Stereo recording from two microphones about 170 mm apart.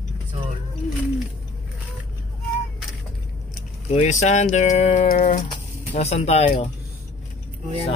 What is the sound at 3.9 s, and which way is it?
Speech, 40° left (ahead or behind).